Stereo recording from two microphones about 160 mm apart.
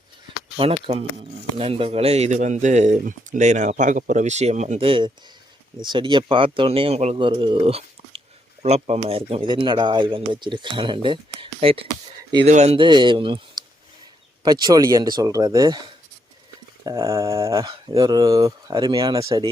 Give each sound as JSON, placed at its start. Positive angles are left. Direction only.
{"t": 0.5, "sound": "speech", "side_deg": -35}
{"t": 12.5, "sound": "speech", "side_deg": -45}
{"t": 12.7, "sound": "speech", "side_deg": -30}